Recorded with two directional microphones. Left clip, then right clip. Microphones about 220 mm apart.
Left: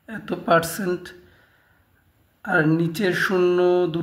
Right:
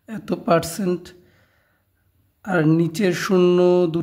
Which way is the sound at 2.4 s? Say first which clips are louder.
Left 1 dB; 35° right (ahead or behind).